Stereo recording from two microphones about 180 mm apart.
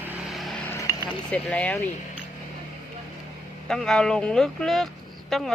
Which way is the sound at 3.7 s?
Centre (ahead or behind).